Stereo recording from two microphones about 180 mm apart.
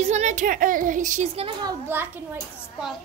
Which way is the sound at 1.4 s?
25° right (ahead or behind).